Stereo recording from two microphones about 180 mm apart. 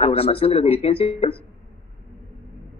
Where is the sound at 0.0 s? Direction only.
30° left (ahead or behind).